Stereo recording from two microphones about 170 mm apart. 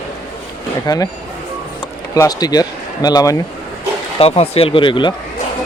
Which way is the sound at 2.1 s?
20° left (ahead or behind).